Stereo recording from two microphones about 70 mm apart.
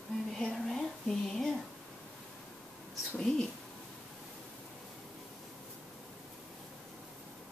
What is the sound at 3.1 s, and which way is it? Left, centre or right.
Speech, centre.